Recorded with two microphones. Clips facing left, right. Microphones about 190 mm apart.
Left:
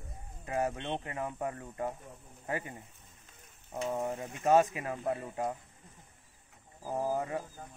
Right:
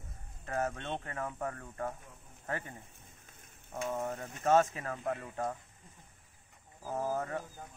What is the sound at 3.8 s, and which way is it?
Speech, 15° left (ahead or behind).